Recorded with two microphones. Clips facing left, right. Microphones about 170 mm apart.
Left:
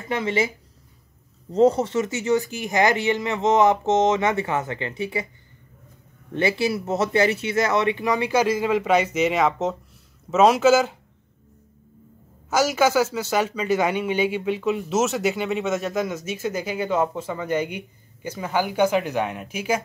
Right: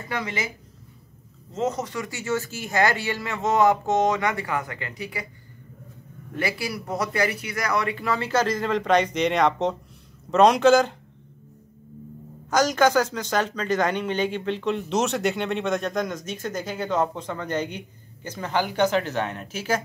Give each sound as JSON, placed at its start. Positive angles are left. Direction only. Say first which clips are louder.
{"t": 0.1, "sound": "speech", "louder": "left 7 dB", "side_deg": 25}
{"t": 1.5, "sound": "speech", "louder": "left 9 dB", "side_deg": 30}
{"t": 6.3, "sound": "speech", "louder": "left 6 dB", "side_deg": 25}
{"t": 12.4, "sound": "speech", "louder": "even", "side_deg": 5}